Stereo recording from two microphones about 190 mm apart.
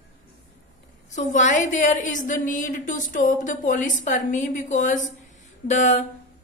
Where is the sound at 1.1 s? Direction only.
40° left (ahead or behind).